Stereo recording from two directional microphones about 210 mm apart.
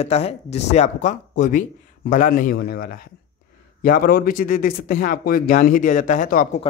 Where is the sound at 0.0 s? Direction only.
30° left (ahead or behind).